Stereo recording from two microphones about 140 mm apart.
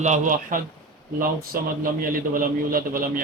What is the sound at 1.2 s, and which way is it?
A man's voice, 90° right.